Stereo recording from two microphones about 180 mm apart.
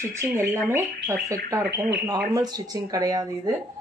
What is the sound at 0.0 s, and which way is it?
Speech, 15° right (ahead or behind).